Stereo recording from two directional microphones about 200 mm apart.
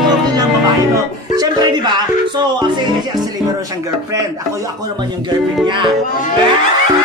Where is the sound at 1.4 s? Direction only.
20° right (ahead or behind).